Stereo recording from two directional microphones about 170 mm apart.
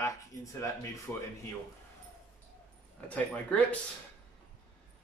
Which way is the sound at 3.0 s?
10° left (ahead or behind).